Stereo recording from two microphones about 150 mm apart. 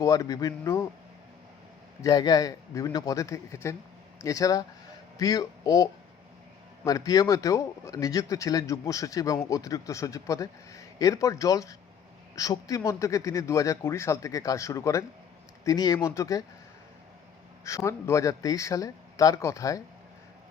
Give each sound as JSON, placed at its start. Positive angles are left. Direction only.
{"t": 0.0, "sound": "speech", "side_deg": 25}
{"t": 2.0, "sound": "speech", "side_deg": 25}
{"t": 17.6, "sound": "speech", "side_deg": 20}